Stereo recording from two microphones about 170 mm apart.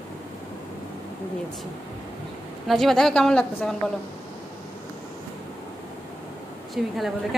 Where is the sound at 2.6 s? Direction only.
Centre (ahead or behind).